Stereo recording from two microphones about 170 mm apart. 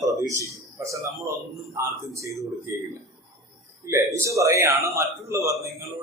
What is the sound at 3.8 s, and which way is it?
A man's voice, 15° right (ahead or behind).